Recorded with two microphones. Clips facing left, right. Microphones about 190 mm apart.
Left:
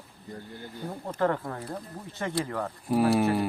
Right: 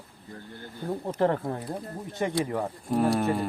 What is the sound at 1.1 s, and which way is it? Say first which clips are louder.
Speech: right 1 dB; 25° right (ahead or behind).